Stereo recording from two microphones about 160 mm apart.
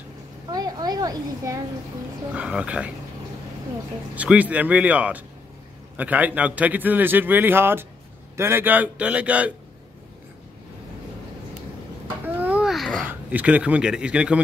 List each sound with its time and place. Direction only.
0.5 s a woman's voice: 25° right (ahead or behind)
2.3 s a man's voice: 5° right (ahead or behind)
4.1 s a man's voice: 10° right (ahead or behind)
12.4 s babbling: 10° right (ahead or behind)
13.0 s a man's voice: 10° right (ahead or behind)